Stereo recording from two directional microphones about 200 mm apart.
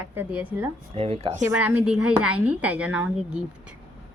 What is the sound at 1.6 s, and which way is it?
A woman's voice, 10° right (ahead or behind).